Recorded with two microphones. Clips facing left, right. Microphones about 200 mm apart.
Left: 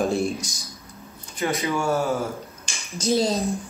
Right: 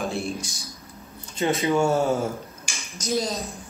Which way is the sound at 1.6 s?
30° right (ahead or behind).